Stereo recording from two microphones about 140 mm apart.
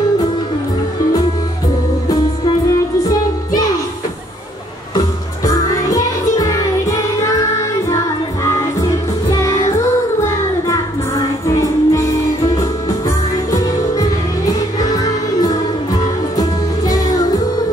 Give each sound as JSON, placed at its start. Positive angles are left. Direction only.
{"t": 5.4, "sound": "music", "side_deg": 25}
{"t": 9.3, "sound": "music", "side_deg": 20}
{"t": 11.5, "sound": "music", "side_deg": 20}
{"t": 13.5, "sound": "music", "side_deg": 25}